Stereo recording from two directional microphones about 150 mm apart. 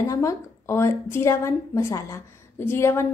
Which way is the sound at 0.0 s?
20° left (ahead or behind).